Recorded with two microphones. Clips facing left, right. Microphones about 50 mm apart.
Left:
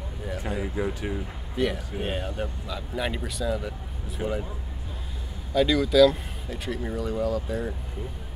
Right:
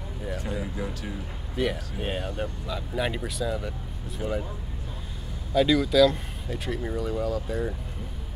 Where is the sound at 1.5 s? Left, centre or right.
Centre.